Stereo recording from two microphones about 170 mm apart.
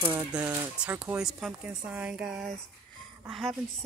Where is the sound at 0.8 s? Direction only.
10° right (ahead or behind).